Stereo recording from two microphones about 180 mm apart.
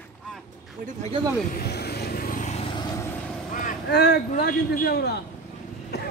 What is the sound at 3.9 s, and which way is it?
A man's voice, 65° left (ahead or behind).